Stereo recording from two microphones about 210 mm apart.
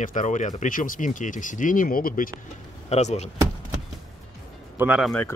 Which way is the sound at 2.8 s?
30° left (ahead or behind).